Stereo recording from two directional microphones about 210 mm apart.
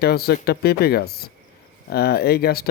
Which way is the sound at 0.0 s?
50° left (ahead or behind).